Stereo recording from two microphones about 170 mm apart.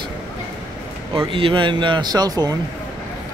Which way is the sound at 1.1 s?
30° right (ahead or behind).